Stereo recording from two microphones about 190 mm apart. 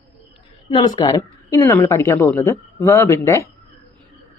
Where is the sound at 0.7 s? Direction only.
25° left (ahead or behind).